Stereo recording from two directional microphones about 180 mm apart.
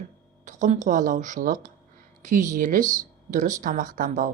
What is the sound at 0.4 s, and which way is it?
Speech, 40° right (ahead or behind).